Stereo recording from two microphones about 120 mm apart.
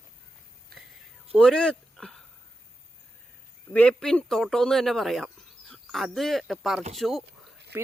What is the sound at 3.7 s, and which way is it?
Speech, 5° left (ahead or behind).